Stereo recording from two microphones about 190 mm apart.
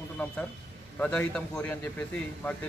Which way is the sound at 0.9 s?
10° left (ahead or behind).